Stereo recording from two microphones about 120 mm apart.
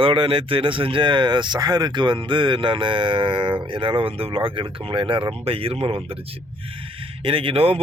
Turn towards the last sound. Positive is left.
turn(degrees=-55)  # may be behind; listen again after turning